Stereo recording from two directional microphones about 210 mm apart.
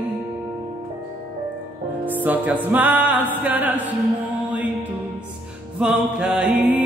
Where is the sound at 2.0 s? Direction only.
10° right (ahead or behind).